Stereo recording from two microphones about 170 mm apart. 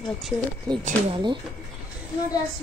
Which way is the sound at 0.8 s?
30° right (ahead or behind).